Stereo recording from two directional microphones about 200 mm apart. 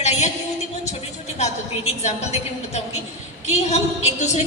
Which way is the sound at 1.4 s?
35° left (ahead or behind).